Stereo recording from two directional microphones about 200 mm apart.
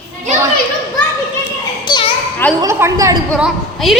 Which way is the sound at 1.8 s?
20° left (ahead or behind).